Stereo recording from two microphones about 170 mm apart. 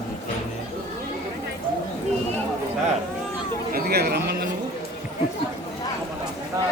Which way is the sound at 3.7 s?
70° right (ahead or behind).